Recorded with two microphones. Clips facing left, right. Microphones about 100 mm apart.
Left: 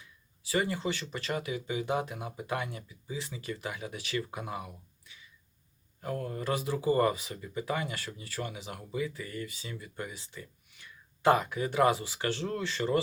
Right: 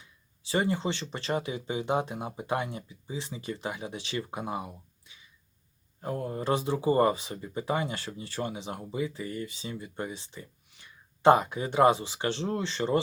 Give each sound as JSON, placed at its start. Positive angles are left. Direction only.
{"t": 0.0, "sound": "speech", "side_deg": -25}